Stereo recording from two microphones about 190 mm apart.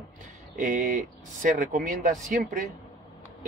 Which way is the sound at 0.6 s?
45° right (ahead or behind).